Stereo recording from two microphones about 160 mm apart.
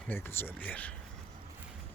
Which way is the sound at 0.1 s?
15° left (ahead or behind).